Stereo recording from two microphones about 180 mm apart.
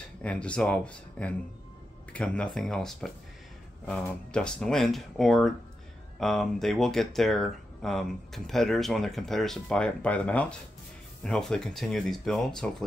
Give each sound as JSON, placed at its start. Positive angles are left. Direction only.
{"t": 0.2, "sound": "speech", "side_deg": 5}